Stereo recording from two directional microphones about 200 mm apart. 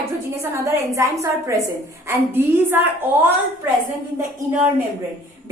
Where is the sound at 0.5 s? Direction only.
15° right (ahead or behind).